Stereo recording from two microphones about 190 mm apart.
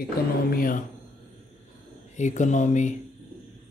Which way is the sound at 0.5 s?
50° left (ahead or behind).